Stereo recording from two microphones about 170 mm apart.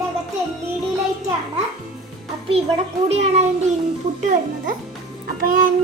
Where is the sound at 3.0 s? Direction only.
35° right (ahead or behind).